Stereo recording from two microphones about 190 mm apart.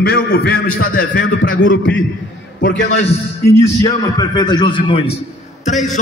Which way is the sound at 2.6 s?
65° left (ahead or behind).